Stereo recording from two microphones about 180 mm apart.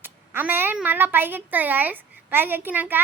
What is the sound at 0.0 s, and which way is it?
A woman's voice, 10° right (ahead or behind).